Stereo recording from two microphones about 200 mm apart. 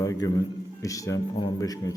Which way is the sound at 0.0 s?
15° left (ahead or behind).